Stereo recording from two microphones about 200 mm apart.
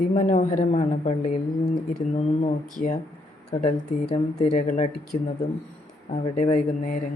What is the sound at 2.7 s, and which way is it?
Speech, 40° left (ahead or behind).